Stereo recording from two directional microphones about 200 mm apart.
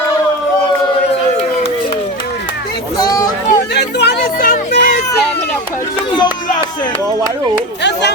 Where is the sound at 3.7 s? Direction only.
60° left (ahead or behind).